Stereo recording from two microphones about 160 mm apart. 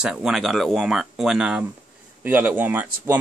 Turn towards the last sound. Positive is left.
turn(degrees=-10)  # may be behind; listen again after turning